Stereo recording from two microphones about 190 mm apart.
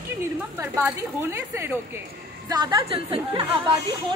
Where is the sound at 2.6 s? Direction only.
25° right (ahead or behind).